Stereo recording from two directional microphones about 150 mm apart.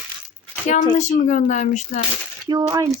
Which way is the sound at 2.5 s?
25° right (ahead or behind).